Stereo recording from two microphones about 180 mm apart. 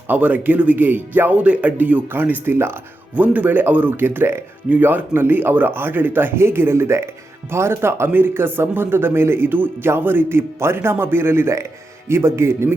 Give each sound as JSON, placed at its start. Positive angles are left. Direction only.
{"t": 0.1, "sound": "speech", "side_deg": -10}